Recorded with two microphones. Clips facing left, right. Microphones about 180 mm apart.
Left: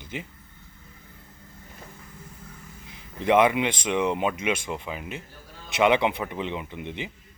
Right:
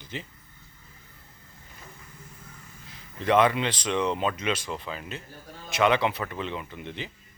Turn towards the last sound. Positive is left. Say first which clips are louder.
# left 3 dB
turn(degrees=15)  # may be behind; listen again after turning